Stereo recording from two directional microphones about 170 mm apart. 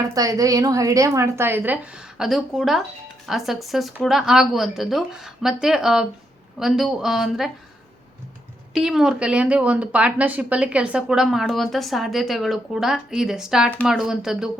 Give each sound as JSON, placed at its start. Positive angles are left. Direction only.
{"t": 0.1, "sound": "a woman's voice", "side_deg": -20}
{"t": 8.7, "sound": "speech", "side_deg": -5}